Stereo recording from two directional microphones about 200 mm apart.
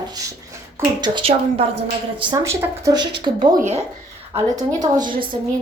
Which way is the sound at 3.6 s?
35° right (ahead or behind).